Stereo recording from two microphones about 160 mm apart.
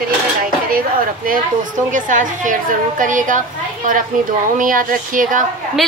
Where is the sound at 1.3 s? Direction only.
55° right (ahead or behind).